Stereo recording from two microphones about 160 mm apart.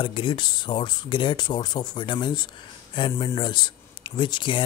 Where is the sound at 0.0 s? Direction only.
30° left (ahead or behind).